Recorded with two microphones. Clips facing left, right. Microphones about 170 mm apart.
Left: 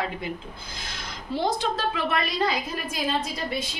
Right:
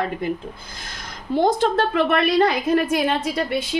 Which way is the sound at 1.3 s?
50° right (ahead or behind).